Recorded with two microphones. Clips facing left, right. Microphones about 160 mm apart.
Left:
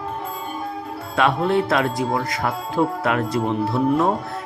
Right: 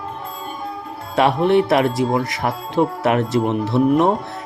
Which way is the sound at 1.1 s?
25° right (ahead or behind).